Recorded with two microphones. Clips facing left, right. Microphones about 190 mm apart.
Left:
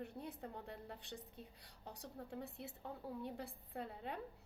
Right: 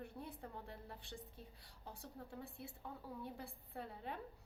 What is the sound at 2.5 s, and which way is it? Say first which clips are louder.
Speech: left 2 dB; 20° left (ahead or behind).